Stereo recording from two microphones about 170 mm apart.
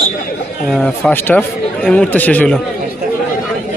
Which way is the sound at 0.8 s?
5° left (ahead or behind).